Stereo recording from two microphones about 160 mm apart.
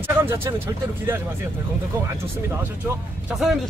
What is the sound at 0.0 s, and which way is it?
Speech, 15° right (ahead or behind).